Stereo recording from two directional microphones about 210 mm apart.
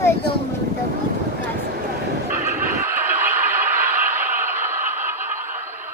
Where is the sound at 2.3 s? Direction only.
10° right (ahead or behind).